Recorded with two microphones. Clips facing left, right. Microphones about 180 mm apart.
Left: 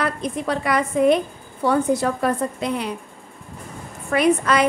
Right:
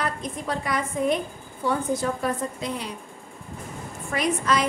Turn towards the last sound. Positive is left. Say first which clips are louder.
# left 6 dB
turn(degrees=60)  # may be behind; listen again after turning